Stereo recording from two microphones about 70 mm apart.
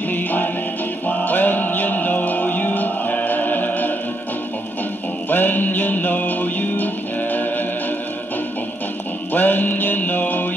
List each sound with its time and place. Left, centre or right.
0.1 s music: left
5.3 s music: left
9.3 s music: left